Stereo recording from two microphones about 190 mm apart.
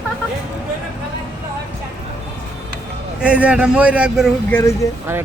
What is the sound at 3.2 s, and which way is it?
Speech, 5° right (ahead or behind).